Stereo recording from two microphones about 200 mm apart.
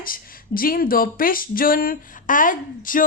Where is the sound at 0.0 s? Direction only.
45° left (ahead or behind).